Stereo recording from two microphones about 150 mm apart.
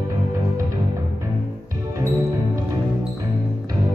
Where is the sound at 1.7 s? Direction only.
20° right (ahead or behind).